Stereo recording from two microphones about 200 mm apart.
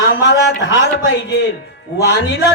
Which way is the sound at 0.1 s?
60° left (ahead or behind).